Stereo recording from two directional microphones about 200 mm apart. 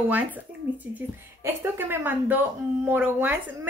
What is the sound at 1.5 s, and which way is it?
Speech, 10° right (ahead or behind).